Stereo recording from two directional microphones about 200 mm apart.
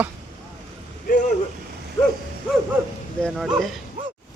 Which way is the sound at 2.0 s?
25° left (ahead or behind).